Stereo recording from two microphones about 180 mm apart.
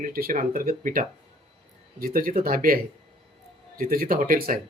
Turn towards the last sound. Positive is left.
turn(degrees=-55)  # may be behind; listen again after turning